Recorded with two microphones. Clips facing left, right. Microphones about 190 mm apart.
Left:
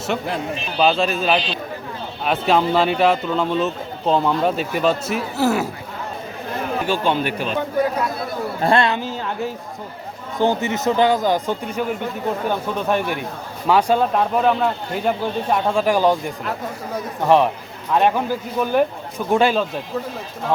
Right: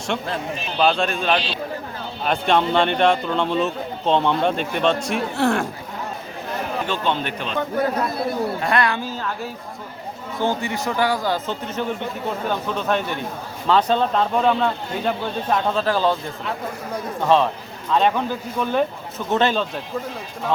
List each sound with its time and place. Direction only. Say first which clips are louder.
0.1 s speech: left 1 dB; 5° left (ahead or behind)
6.8 s speech: left 5 dB; 10° left (ahead or behind)
8.6 s speech: left 7 dB; 25° left (ahead or behind)
10.4 s speech: left 4 dB; 20° left (ahead or behind)